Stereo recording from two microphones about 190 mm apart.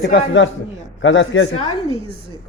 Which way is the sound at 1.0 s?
80° left.